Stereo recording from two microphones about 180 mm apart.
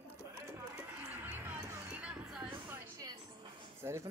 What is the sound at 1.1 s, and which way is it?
Music, 10° right (ahead or behind).